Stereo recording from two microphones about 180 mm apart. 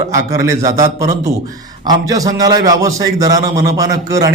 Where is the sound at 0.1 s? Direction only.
15° right (ahead or behind).